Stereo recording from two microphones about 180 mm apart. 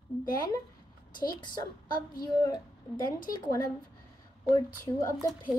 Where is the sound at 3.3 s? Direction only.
20° left (ahead or behind).